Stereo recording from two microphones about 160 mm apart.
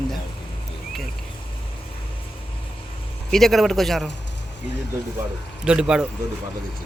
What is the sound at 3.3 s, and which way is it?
Speech, centre (ahead or behind).